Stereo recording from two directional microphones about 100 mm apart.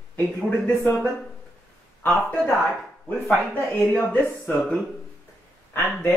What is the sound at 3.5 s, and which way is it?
Speech, 15° left (ahead or behind).